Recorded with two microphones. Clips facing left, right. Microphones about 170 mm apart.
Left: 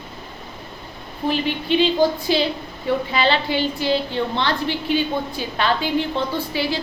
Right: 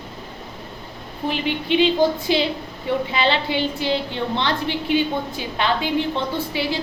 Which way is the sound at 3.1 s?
20° right (ahead or behind).